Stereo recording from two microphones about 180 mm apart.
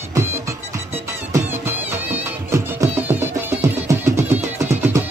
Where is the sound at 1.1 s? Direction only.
15° right (ahead or behind).